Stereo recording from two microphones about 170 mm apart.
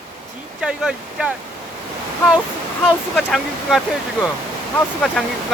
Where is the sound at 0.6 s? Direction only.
5° right (ahead or behind).